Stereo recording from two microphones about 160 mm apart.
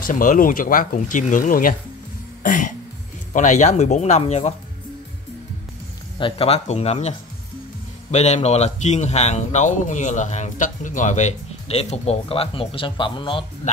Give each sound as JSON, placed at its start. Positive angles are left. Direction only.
{"t": 0.0, "sound": "speech", "side_deg": 55}
{"t": 2.4, "sound": "cough", "side_deg": 55}
{"t": 3.3, "sound": "a man's voice", "side_deg": 50}
{"t": 6.1, "sound": "a man's voice", "side_deg": 35}